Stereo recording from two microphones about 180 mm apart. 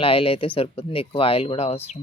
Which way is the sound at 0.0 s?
30° left (ahead or behind).